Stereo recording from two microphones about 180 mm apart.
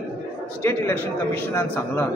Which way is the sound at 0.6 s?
15° left (ahead or behind).